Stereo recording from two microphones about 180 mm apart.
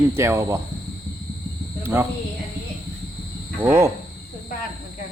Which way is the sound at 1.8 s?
15° right (ahead or behind).